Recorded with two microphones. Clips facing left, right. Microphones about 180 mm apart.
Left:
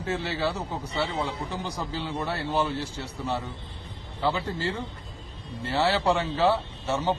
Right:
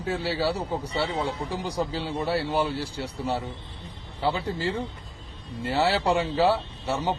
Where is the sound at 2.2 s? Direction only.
10° right (ahead or behind).